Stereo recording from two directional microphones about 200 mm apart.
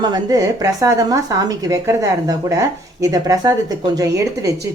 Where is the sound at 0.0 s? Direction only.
20° right (ahead or behind).